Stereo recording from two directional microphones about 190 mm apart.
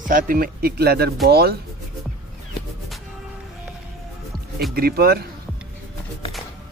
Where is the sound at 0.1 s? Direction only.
50° right (ahead or behind).